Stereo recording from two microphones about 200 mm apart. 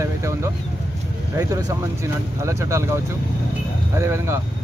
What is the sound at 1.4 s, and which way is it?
Speech, 15° right (ahead or behind).